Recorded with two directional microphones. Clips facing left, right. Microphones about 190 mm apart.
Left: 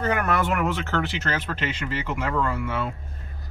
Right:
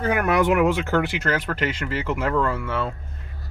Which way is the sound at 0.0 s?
10° right (ahead or behind).